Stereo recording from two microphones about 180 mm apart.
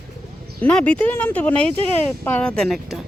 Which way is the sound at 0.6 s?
5° left (ahead or behind).